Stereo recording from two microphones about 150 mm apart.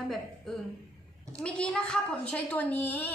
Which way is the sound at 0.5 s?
5° left (ahead or behind).